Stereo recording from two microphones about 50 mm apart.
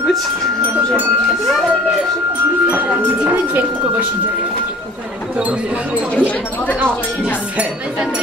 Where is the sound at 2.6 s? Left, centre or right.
Right.